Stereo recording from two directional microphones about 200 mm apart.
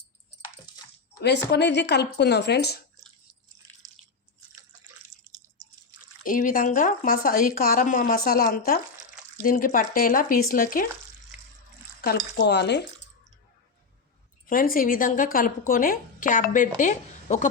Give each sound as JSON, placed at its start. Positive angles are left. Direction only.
{"t": 1.5, "sound": "speech", "side_deg": 60}
{"t": 6.2, "sound": "speech", "side_deg": 45}
{"t": 12.0, "sound": "speech", "side_deg": 55}
{"t": 14.4, "sound": "speech", "side_deg": 45}